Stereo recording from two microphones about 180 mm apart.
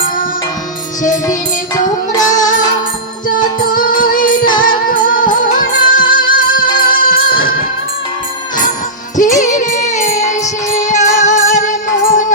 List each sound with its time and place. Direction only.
2.3 s music: 45° left (ahead or behind)
3.7 s music: 50° left (ahead or behind)
9.1 s music: 45° left (ahead or behind)